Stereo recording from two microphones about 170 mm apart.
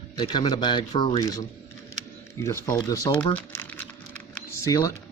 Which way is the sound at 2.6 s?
20° left (ahead or behind).